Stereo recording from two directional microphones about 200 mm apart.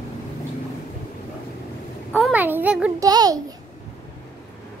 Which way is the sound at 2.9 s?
20° right (ahead or behind).